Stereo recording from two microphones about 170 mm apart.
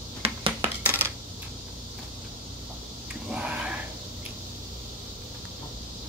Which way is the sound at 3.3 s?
5° right (ahead or behind).